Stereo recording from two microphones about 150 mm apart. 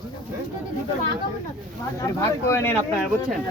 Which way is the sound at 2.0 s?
20° left (ahead or behind).